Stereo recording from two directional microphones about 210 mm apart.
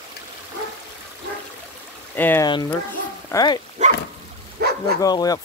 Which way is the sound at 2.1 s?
10° left (ahead or behind).